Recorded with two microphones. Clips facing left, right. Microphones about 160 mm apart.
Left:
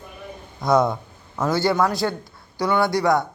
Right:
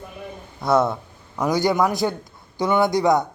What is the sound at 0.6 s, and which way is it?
A man's voice, 5° right (ahead or behind).